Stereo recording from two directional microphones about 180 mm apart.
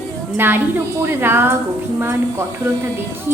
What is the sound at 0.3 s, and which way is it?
A woman's voice, 10° right (ahead or behind).